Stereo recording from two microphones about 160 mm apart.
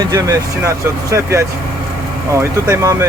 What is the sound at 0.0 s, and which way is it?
Speech, 20° right (ahead or behind).